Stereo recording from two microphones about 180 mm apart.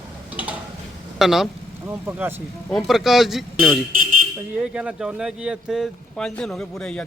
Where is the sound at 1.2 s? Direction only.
Centre (ahead or behind).